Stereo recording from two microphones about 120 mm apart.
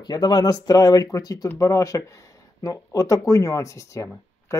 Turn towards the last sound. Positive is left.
turn(degrees=25)  # may be behind; listen again after turning